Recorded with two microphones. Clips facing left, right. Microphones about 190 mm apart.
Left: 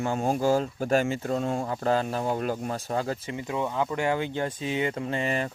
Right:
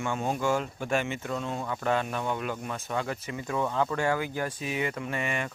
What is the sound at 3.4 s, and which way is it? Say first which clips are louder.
Speech: right 1 dB; 20° left (ahead or behind).